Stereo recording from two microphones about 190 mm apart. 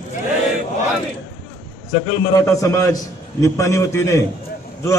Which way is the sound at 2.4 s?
15° left (ahead or behind).